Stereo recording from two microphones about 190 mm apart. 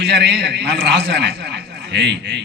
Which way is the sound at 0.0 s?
65° right (ahead or behind).